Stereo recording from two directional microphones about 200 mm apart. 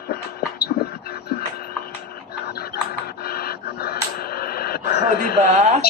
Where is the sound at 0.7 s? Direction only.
50° left (ahead or behind).